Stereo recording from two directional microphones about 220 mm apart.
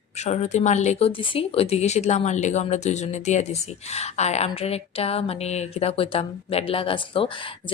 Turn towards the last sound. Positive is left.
turn(degrees=25)  # may be behind; listen again after turning